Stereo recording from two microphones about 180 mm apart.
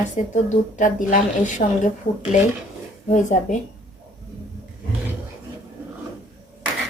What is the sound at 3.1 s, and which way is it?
Speech, 45° left (ahead or behind).